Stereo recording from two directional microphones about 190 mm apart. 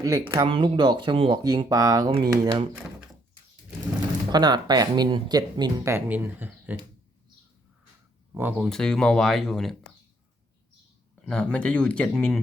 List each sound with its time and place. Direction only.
0.0 s speech: 20° right (ahead or behind)
4.3 s speech: 20° right (ahead or behind)
8.4 s speech: 10° right (ahead or behind)
11.3 s speech: 5° left (ahead or behind)